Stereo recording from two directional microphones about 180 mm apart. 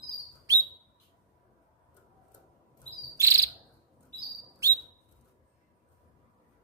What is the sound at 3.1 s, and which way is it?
Cricket, 15° right (ahead or behind).